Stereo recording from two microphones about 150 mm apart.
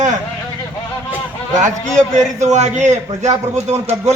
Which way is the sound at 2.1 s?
50° right (ahead or behind).